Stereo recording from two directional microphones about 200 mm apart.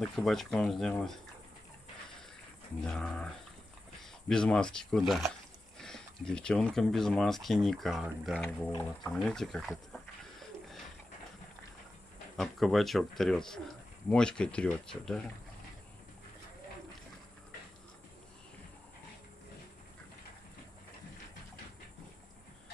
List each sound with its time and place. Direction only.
0.0 s speech: centre (ahead or behind)
2.8 s speech: 5° left (ahead or behind)
12.4 s speech: centre (ahead or behind)